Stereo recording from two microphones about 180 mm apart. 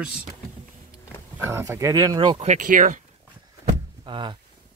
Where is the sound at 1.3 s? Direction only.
15° right (ahead or behind).